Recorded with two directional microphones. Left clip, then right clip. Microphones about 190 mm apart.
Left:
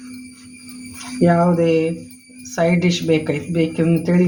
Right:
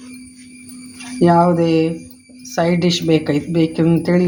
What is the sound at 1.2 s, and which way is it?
Speech, 50° right (ahead or behind).